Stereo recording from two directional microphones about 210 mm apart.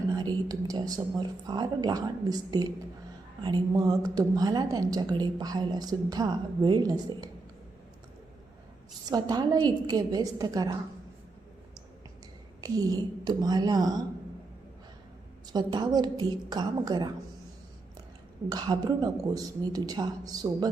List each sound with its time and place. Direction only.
0.1 s a woman's voice: 20° right (ahead or behind)
9.0 s a woman's voice: 20° right (ahead or behind)
12.6 s a woman's voice: 15° right (ahead or behind)
15.5 s a woman's voice: 20° right (ahead or behind)
18.4 s a woman's voice: 20° right (ahead or behind)